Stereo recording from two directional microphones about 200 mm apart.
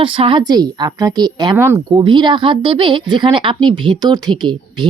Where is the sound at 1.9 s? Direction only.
25° right (ahead or behind).